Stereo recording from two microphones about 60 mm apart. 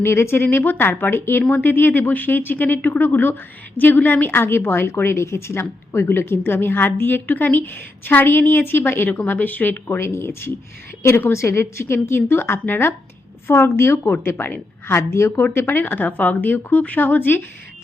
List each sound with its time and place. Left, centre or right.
0.0 s a woman's voice: left
1.5 s a woman's voice: left
4.9 s a woman's voice: left
10.0 s a woman's voice: left
14.0 s a woman's voice: left
15.5 s a woman's voice: left